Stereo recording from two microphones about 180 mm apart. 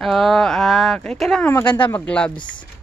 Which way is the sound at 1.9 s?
5° left (ahead or behind).